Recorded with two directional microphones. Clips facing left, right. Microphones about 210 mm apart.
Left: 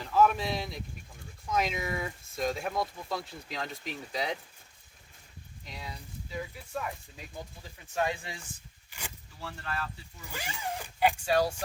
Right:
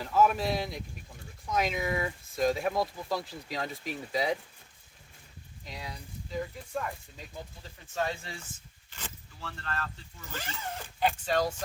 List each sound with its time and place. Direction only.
0.0 s speech: 5° right (ahead or behind)
5.6 s speech: centre (ahead or behind)
7.9 s speech: 15° left (ahead or behind)